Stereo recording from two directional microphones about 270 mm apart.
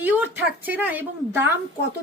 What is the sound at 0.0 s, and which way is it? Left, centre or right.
A woman's voice, centre.